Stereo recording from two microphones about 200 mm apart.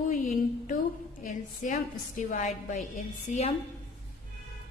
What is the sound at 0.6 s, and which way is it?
A woman's voice, 40° left (ahead or behind).